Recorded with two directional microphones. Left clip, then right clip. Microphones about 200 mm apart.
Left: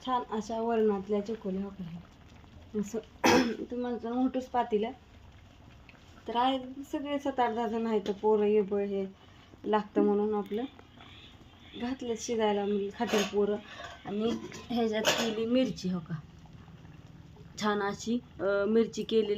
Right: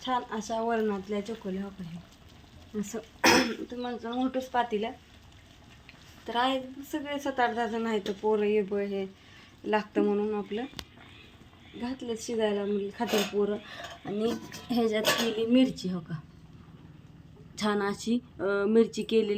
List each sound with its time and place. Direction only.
0.0 s a woman's voice: centre (ahead or behind)
2.8 s a woman's voice: 5° left (ahead or behind)
6.2 s a woman's voice: centre (ahead or behind)
11.8 s a woman's voice: centre (ahead or behind)
14.0 s a woman's voice: 15° right (ahead or behind)
15.2 s a woman's voice: centre (ahead or behind)
17.6 s a woman's voice: 5° right (ahead or behind)